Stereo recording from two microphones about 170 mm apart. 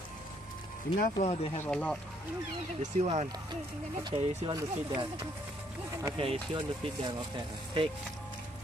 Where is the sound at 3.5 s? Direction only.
25° right (ahead or behind).